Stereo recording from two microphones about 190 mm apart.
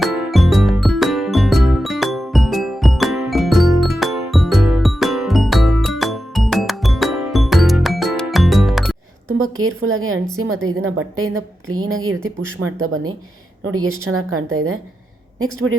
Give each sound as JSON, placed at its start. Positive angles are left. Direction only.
{"t": 0.0, "sound": "music", "side_deg": 0}
{"t": 9.4, "sound": "a woman's voice", "side_deg": -90}